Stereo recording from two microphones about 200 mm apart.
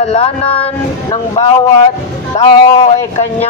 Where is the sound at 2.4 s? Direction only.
30° left (ahead or behind).